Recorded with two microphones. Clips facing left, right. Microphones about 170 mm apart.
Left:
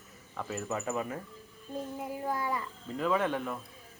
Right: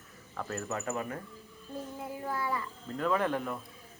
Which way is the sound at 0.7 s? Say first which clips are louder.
Left 2 dB; 15° left (ahead or behind).